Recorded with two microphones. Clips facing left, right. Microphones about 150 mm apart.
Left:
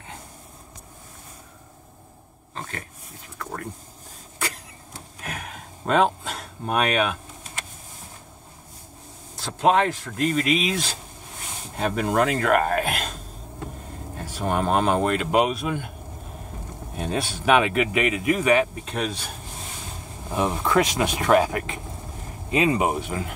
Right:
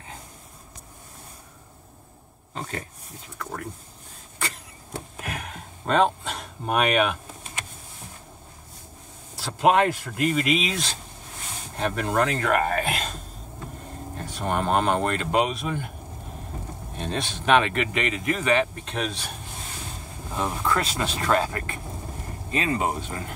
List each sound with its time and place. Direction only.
5.3 s a sound: centre (ahead or behind)
9.4 s speech: 5° right (ahead or behind)
14.1 s speech: 5° left (ahead or behind)
16.9 s speech: 5° left (ahead or behind)
20.3 s speech: 15° left (ahead or behind)